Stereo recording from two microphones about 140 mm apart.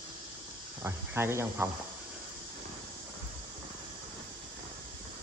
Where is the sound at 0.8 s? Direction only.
15° right (ahead or behind).